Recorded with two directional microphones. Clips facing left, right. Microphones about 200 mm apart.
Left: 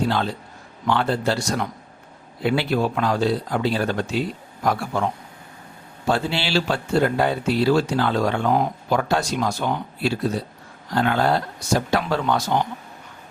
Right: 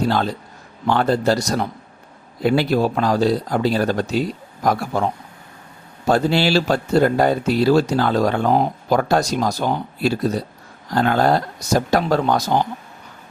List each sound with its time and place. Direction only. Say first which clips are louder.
0.1 s speech: right 3 dB; 40° right (ahead or behind)
6.1 s speech: right 6 dB; 45° right (ahead or behind)